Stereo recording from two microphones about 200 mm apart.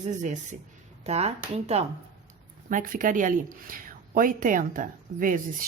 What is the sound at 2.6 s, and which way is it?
Speech, 40° right (ahead or behind).